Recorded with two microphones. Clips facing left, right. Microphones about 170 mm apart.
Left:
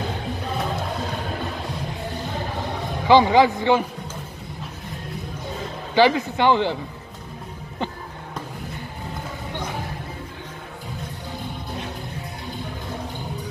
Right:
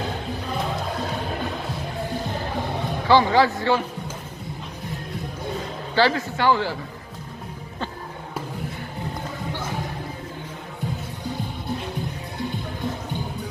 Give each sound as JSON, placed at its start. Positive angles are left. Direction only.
{"t": 3.1, "sound": "a man's voice", "side_deg": 15}
{"t": 5.9, "sound": "speech", "side_deg": 15}